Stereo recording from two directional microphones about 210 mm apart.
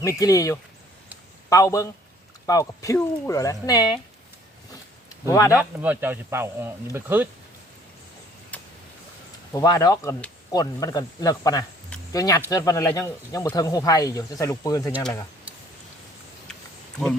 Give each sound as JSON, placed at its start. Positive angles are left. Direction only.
{"t": 0.0, "sound": "speech", "side_deg": 15}
{"t": 5.2, "sound": "speech", "side_deg": 15}
{"t": 5.5, "sound": "speech", "side_deg": -10}
{"t": 9.5, "sound": "speech", "side_deg": 15}